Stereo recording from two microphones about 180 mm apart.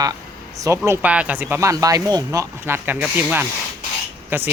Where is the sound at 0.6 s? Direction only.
15° right (ahead or behind).